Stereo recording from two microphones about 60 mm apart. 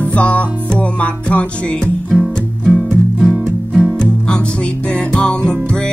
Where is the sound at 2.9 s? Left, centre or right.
Centre.